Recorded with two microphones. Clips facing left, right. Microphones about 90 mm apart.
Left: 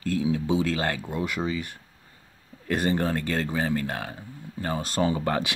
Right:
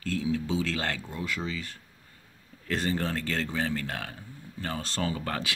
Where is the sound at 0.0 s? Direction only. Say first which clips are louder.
Left 4 dB; 15° left (ahead or behind).